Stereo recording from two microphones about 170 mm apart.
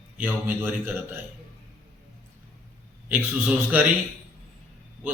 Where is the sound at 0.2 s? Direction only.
10° right (ahead or behind).